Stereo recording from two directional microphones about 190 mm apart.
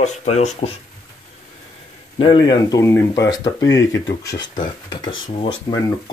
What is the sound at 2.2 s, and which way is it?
Speech, 25° left (ahead or behind).